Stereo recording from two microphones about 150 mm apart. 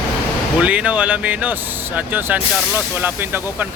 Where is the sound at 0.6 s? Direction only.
10° right (ahead or behind).